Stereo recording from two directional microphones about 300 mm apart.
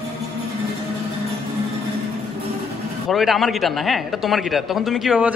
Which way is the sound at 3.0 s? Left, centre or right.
Centre.